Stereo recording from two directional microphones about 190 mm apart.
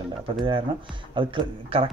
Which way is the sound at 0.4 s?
25° right (ahead or behind).